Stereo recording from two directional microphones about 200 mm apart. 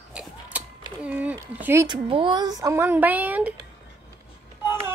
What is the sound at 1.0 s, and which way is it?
Speech, 5° right (ahead or behind).